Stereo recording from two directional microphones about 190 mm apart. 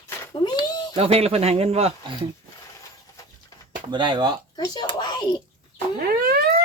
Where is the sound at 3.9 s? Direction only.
25° right (ahead or behind).